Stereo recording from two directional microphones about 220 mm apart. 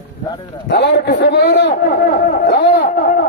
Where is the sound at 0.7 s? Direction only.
50° left (ahead or behind).